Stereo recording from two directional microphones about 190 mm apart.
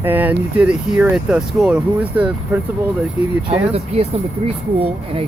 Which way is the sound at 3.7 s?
30° right (ahead or behind).